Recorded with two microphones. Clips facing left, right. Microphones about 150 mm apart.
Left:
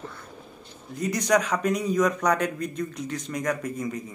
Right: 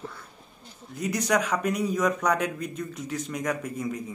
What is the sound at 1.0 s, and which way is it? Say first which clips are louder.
Speech: left 2 dB; 10° right (ahead or behind).